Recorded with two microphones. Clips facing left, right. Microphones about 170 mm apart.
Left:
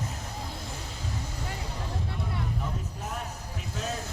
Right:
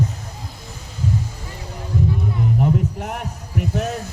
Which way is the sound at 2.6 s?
70° right (ahead or behind).